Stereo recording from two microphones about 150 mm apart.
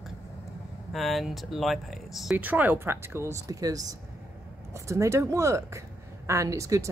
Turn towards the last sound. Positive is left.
turn(degrees=-20)  # may be behind; listen again after turning